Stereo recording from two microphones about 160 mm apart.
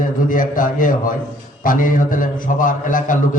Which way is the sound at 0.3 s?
55° left (ahead or behind).